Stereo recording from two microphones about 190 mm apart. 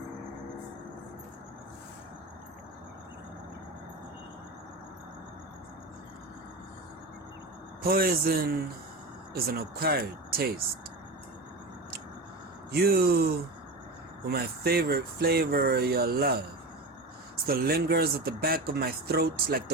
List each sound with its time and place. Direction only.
7.9 s speech: 55° right (ahead or behind)
12.8 s speech: 55° right (ahead or behind)
17.4 s speech: 55° right (ahead or behind)